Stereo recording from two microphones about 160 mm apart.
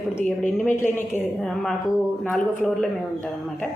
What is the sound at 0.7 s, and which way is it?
Speech, 10° left (ahead or behind).